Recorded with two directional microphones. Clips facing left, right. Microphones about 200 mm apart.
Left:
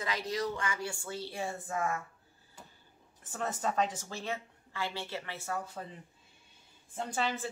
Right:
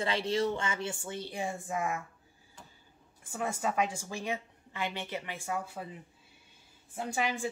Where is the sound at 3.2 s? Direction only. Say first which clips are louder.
Right 2 dB; 10° right (ahead or behind).